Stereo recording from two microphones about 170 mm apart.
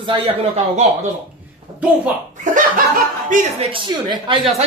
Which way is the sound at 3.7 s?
30° right (ahead or behind).